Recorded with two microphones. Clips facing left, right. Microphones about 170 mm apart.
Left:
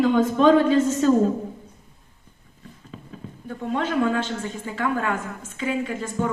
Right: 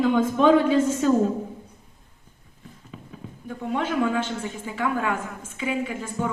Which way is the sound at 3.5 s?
10° right (ahead or behind).